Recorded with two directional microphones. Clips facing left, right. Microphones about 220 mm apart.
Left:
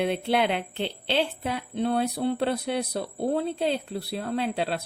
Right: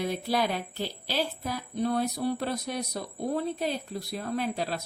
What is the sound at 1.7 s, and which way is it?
A woman's voice, 30° left (ahead or behind).